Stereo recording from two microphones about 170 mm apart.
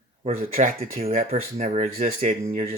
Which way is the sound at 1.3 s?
40° right (ahead or behind).